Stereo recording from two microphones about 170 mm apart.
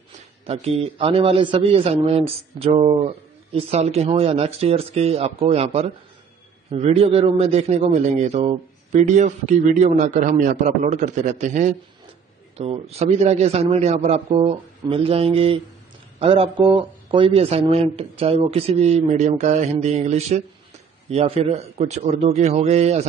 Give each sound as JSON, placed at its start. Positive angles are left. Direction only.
{"t": 0.5, "sound": "a man's voice", "side_deg": -40}
{"t": 12.5, "sound": "a man's voice", "side_deg": -35}